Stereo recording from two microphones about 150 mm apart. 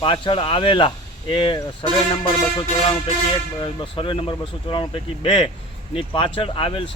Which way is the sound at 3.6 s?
35° left (ahead or behind).